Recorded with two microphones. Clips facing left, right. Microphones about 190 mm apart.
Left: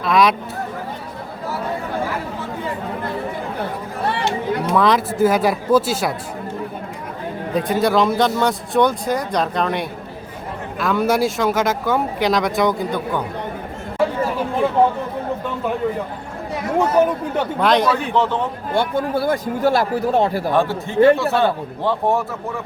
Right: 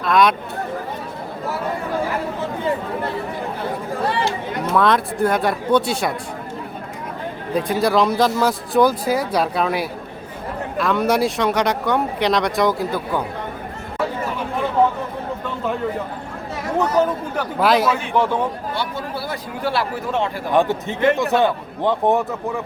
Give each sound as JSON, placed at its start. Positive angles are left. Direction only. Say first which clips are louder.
{"t": 0.0, "sound": "speech", "louder": "even", "side_deg": 0}
{"t": 4.7, "sound": "speech", "louder": "even", "side_deg": 0}
{"t": 7.5, "sound": "speech", "louder": "left 1 dB", "side_deg": 0}
{"t": 16.7, "sound": "speech", "louder": "left 2 dB", "side_deg": 20}
{"t": 17.6, "sound": "a man's voice", "louder": "even", "side_deg": -5}
{"t": 18.7, "sound": "speech", "louder": "left 7 dB", "side_deg": 50}
{"t": 20.5, "sound": "a man's voice", "louder": "right 1 dB", "side_deg": -15}